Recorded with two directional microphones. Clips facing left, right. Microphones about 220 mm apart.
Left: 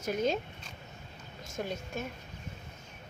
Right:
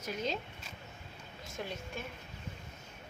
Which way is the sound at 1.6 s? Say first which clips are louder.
Left 5 dB; 45° left (ahead or behind).